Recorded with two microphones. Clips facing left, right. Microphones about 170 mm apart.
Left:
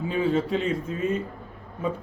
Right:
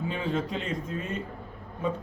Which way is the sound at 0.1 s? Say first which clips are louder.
Left 9 dB; 5° left (ahead or behind).